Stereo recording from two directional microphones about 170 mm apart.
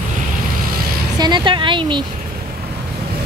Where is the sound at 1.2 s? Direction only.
25° right (ahead or behind).